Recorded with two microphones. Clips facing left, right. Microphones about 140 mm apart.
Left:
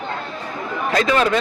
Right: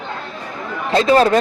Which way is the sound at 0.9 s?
30° right (ahead or behind).